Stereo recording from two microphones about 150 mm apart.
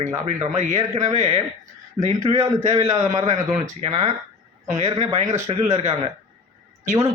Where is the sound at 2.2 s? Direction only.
20° right (ahead or behind).